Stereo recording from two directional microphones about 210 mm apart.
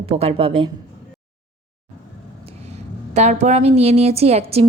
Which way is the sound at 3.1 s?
35° right (ahead or behind).